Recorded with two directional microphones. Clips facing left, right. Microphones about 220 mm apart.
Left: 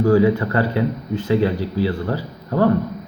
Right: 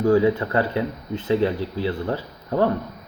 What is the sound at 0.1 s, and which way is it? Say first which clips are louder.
Speech: left 1 dB; 20° right (ahead or behind).